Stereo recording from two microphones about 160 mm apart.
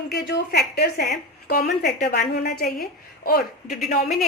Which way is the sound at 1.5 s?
60° left (ahead or behind).